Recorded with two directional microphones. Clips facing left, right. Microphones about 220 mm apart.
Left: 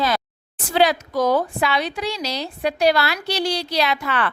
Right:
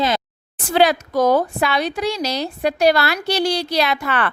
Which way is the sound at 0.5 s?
50° right (ahead or behind).